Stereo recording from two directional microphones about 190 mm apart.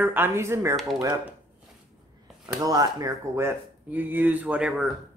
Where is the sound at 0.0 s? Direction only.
10° right (ahead or behind).